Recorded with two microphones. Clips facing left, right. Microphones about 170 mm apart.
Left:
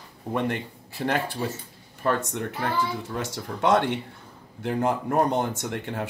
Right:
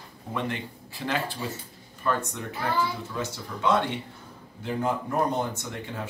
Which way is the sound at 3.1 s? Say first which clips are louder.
Left 2 dB; 75° left (ahead or behind).